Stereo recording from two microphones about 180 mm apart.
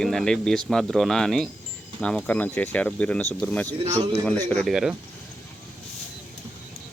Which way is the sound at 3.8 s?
30° right (ahead or behind).